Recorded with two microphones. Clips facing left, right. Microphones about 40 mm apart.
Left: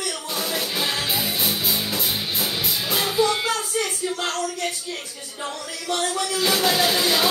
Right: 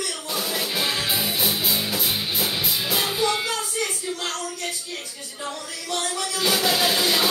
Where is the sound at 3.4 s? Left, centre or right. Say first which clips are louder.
Left 2 dB; left.